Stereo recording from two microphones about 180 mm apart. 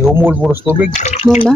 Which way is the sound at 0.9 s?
40° left (ahead or behind).